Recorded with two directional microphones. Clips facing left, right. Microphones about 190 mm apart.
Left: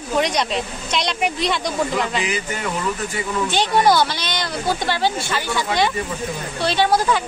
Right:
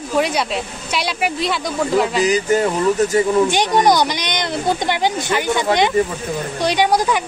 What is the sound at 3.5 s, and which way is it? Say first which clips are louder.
Speech: right 2 dB; 15° right (ahead or behind).